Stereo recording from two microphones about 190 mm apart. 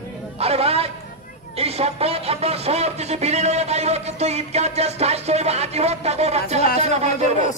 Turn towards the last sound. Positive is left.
turn(degrees=-35)  # may be behind; listen again after turning